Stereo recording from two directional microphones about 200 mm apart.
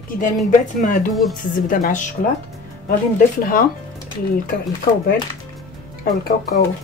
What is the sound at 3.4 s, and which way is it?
Speech, 45° left (ahead or behind).